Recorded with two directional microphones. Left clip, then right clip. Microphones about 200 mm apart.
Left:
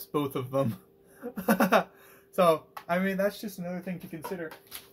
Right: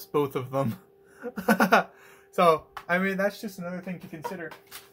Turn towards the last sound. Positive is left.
turn(degrees=0)  # may be behind; listen again after turning